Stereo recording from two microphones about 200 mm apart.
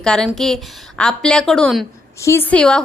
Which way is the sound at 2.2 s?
10° left (ahead or behind).